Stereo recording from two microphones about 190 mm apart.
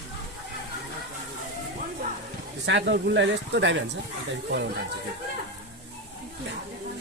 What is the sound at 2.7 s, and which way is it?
A man's voice, 70° right (ahead or behind).